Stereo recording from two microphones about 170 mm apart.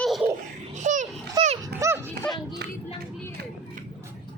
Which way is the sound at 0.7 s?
45° right (ahead or behind).